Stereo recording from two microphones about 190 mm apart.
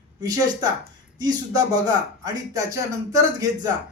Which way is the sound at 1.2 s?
20° right (ahead or behind).